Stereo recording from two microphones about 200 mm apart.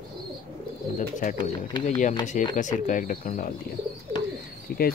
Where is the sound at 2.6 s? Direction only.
40° left (ahead or behind).